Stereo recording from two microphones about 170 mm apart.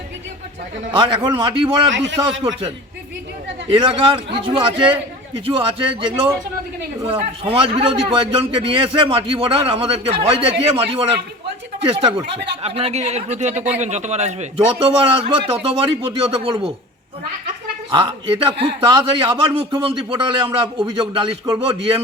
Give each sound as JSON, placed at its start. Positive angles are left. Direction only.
{"t": 0.9, "sound": "a man's voice", "side_deg": -30}
{"t": 1.9, "sound": "a man's voice", "side_deg": -90}
{"t": 2.4, "sound": "a man's voice", "side_deg": -25}
{"t": 11.9, "sound": "a man's voice", "side_deg": -30}
{"t": 15.1, "sound": "a man's voice", "side_deg": -30}
{"t": 17.9, "sound": "a man's voice", "side_deg": -30}